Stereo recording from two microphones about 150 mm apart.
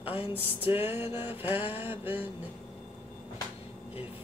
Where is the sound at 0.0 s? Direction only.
40° left (ahead or behind).